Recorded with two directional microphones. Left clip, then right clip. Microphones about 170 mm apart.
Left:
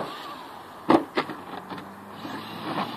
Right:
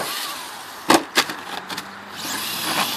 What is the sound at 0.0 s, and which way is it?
Vehicle, 5° right (ahead or behind).